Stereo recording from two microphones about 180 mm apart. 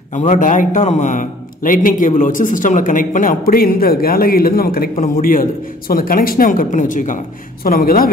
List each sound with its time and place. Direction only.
0.1 s a man's voice: 45° left (ahead or behind)